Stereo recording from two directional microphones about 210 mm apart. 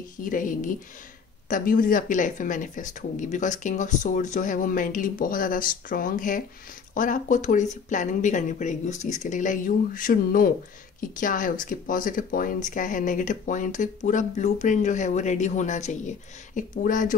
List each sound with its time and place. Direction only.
0.2 s speech: 40° left (ahead or behind)